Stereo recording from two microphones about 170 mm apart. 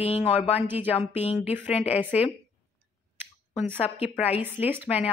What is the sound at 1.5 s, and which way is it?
Speech, 10° right (ahead or behind).